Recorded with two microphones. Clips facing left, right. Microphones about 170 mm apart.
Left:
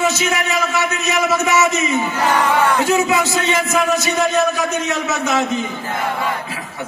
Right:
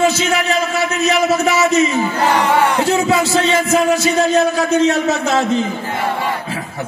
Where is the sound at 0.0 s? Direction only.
30° right (ahead or behind).